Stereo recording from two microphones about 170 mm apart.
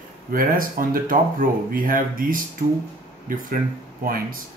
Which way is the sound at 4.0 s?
55° right (ahead or behind).